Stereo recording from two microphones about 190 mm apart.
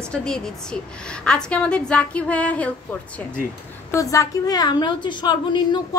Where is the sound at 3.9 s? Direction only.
15° left (ahead or behind).